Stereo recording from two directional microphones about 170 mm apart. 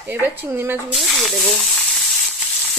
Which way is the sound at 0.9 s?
Centre (ahead or behind).